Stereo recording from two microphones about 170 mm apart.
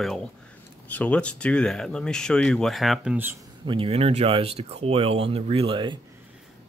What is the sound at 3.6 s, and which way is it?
Speech, 35° right (ahead or behind).